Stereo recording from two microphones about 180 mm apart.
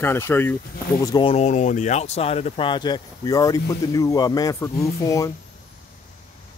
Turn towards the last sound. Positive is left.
turn(degrees=20)  # may be behind; listen again after turning